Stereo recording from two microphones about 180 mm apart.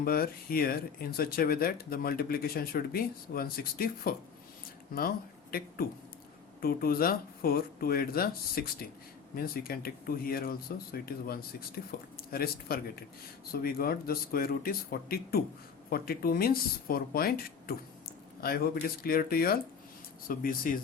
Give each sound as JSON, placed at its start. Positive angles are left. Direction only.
{"t": 0.0, "sound": "speech", "side_deg": 55}